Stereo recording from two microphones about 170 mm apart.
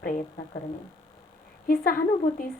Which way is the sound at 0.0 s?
50° left (ahead or behind).